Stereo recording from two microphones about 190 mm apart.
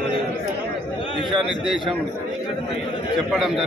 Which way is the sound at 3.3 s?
Centre (ahead or behind).